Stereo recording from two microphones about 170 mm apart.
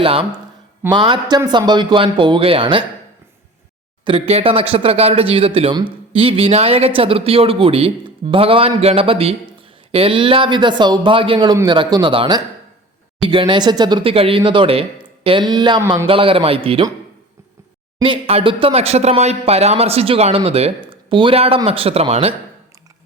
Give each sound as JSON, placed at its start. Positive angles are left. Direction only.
{"t": 0.0, "sound": "speech", "side_deg": -35}
{"t": 4.0, "sound": "speech", "side_deg": -35}
{"t": 18.0, "sound": "speech", "side_deg": -35}